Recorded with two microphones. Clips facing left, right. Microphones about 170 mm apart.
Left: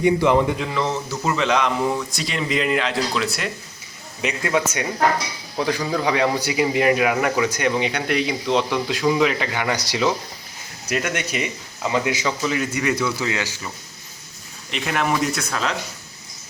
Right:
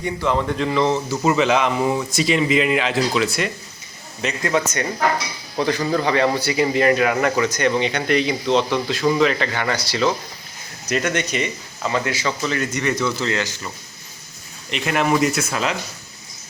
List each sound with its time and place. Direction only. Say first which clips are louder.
0.0 s speech: left 5 dB; 15° left (ahead or behind)
0.7 s speech: right 5 dB; centre (ahead or behind)
14.7 s speech: right 3 dB; centre (ahead or behind)